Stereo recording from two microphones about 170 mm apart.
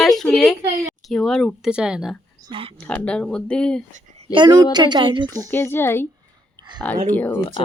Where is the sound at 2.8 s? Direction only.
5° left (ahead or behind).